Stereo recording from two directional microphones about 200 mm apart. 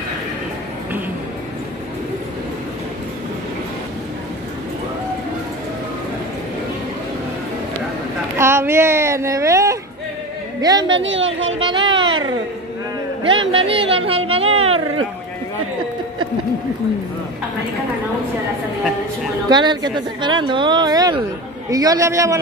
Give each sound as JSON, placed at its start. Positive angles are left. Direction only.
{"t": 8.4, "sound": "speech", "side_deg": -10}
{"t": 11.1, "sound": "speech", "side_deg": -70}
{"t": 11.6, "sound": "a sound", "side_deg": -25}
{"t": 13.2, "sound": "speech", "side_deg": -25}
{"t": 19.5, "sound": "a man's voice", "side_deg": -20}